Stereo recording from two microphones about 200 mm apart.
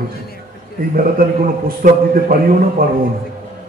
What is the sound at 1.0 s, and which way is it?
A man's voice, 45° right (ahead or behind).